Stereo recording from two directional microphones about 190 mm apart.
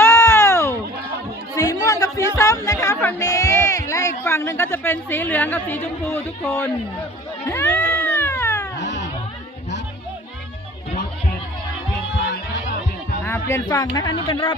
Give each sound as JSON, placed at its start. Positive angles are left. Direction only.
{"t": 0.0, "sound": "a sound", "side_deg": 15}
{"t": 6.1, "sound": "speech", "side_deg": 10}
{"t": 7.4, "sound": "cat", "side_deg": 15}
{"t": 13.2, "sound": "speech", "side_deg": 10}